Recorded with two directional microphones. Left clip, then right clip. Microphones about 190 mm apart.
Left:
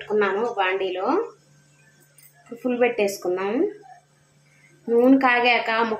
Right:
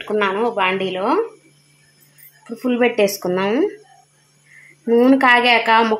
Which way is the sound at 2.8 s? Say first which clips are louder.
Right 5 dB; 50° right (ahead or behind).